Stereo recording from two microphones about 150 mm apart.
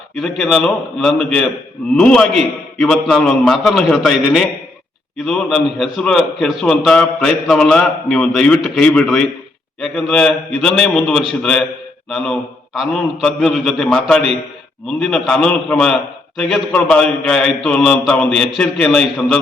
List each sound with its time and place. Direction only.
0.2 s a man's voice: centre (ahead or behind)